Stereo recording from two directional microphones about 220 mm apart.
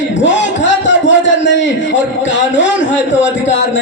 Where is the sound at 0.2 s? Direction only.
55° left (ahead or behind).